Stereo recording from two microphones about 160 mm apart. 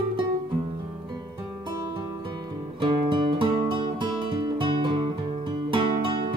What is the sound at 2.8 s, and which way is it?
Music, 30° right (ahead or behind).